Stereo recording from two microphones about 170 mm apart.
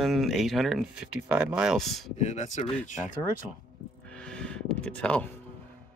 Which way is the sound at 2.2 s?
45° left (ahead or behind).